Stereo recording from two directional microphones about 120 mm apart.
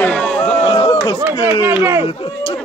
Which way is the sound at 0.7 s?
55° left (ahead or behind).